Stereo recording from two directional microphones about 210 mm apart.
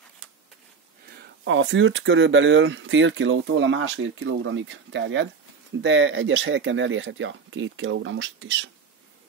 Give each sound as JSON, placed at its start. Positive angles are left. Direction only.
{"t": 1.2, "sound": "speech", "side_deg": -60}